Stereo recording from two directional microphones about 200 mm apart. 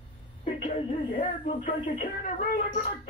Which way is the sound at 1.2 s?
35° left (ahead or behind).